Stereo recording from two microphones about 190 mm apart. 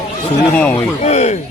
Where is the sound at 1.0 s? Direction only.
35° left (ahead or behind).